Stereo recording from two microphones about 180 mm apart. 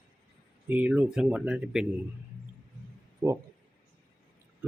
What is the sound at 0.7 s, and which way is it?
Speech, 10° right (ahead or behind).